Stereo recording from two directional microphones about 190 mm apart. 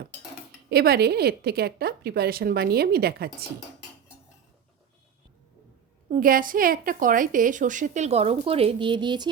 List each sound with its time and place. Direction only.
0.7 s a woman's voice: 55° right (ahead or behind)
6.1 s a woman's voice: 45° right (ahead or behind); by 9.3 s 25° right (ahead or behind)